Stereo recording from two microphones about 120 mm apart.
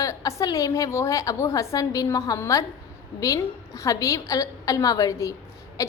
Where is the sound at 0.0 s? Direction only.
30° left (ahead or behind).